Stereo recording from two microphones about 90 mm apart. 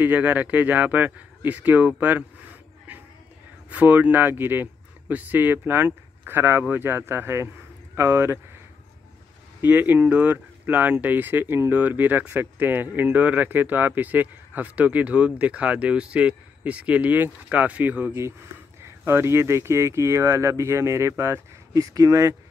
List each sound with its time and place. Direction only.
0.0 s speech: 20° right (ahead or behind)
3.7 s speech: 15° right (ahead or behind)
9.6 s speech: 20° right (ahead or behind)
18.8 s speech: 30° right (ahead or behind)